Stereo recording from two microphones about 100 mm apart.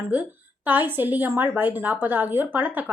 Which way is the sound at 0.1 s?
15° right (ahead or behind).